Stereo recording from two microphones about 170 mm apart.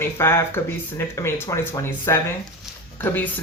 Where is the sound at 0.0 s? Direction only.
15° left (ahead or behind).